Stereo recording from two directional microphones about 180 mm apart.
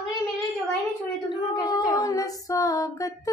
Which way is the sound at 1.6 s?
20° left (ahead or behind).